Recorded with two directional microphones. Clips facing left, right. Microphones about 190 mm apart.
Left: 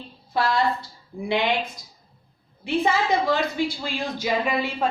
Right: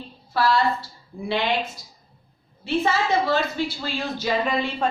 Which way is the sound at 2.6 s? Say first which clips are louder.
Even; 15° left (ahead or behind).